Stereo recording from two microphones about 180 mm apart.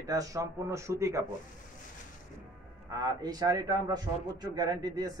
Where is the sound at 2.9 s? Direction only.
20° right (ahead or behind).